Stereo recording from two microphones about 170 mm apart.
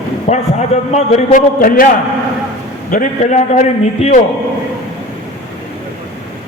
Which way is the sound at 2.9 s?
50° left (ahead or behind).